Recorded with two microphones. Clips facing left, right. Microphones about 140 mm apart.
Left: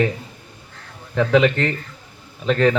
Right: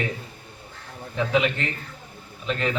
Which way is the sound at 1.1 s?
75° left (ahead or behind).